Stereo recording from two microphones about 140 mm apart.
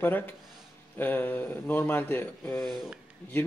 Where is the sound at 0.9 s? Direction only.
15° left (ahead or behind).